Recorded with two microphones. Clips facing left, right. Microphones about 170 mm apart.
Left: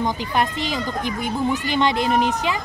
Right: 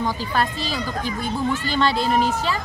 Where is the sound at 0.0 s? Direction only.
20° left (ahead or behind).